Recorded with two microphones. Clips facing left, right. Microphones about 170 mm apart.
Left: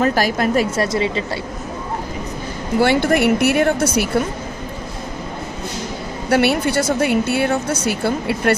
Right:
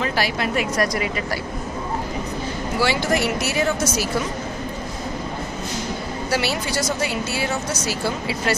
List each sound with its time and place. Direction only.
0.0 s a woman's voice: 45° left (ahead or behind)
0.7 s a woman's voice: 25° left (ahead or behind)
2.8 s a woman's voice: 55° left (ahead or behind)
6.3 s a woman's voice: 55° left (ahead or behind)